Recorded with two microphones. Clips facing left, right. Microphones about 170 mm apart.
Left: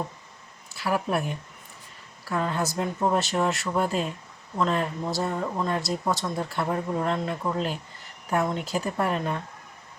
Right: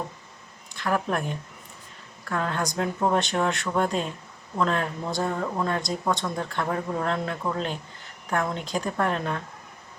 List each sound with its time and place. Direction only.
0.7 s speech: 5° left (ahead or behind)